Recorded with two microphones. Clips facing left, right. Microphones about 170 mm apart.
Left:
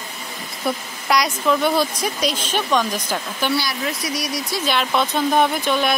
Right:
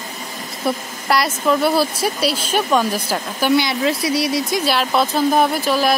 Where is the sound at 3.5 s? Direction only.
25° right (ahead or behind).